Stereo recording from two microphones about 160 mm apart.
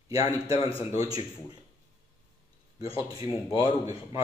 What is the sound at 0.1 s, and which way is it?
A man's voice, 20° right (ahead or behind).